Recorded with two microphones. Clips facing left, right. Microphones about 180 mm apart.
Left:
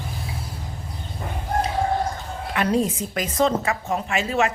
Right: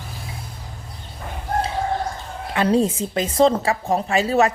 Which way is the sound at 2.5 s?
30° right (ahead or behind).